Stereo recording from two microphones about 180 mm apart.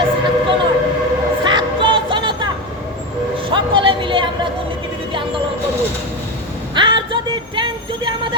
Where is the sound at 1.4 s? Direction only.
25° right (ahead or behind).